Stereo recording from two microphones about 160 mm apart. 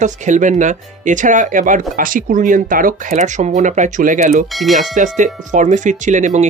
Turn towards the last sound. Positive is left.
turn(degrees=-50)  # may be behind; listen again after turning